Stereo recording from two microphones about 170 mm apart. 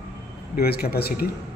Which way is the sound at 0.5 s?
65° left (ahead or behind).